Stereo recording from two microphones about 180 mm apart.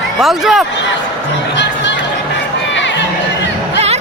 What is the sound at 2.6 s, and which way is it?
Crowd, 85° left.